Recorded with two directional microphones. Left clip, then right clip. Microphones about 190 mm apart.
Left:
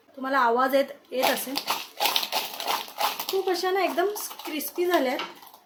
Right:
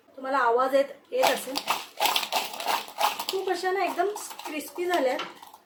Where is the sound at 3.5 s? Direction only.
35° left (ahead or behind).